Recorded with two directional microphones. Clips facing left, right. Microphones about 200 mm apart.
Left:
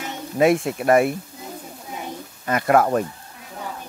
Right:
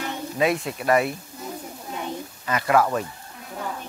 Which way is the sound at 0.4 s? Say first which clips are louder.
Left 6 dB; 50° left (ahead or behind).